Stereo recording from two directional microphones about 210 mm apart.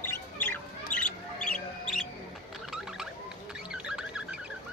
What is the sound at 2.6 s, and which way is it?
Mechanisms, centre (ahead or behind).